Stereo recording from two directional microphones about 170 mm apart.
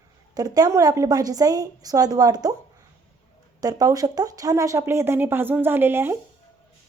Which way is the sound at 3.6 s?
20° right (ahead or behind).